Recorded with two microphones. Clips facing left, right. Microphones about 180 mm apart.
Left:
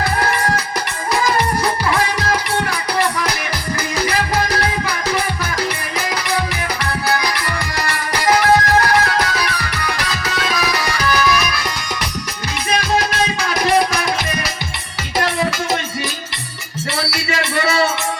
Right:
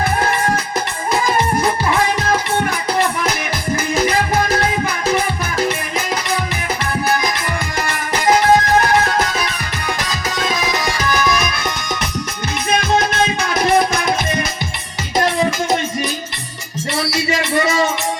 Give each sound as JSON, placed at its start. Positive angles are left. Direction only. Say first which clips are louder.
{"t": 0.0, "sound": "music", "louder": "right 1 dB", "side_deg": -25}
{"t": 3.9, "sound": "music", "louder": "right 2 dB", "side_deg": -25}
{"t": 7.9, "sound": "music", "louder": "right 1 dB", "side_deg": -20}
{"t": 15.2, "sound": "music", "louder": "right 2 dB", "side_deg": -20}
{"t": 17.0, "sound": "music", "louder": "right 3 dB", "side_deg": -20}